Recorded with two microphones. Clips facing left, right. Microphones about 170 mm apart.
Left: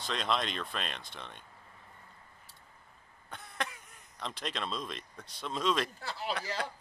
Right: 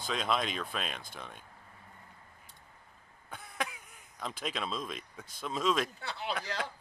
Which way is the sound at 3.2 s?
5° right (ahead or behind).